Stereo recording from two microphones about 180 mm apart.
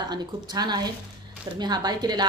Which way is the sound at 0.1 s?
25° right (ahead or behind).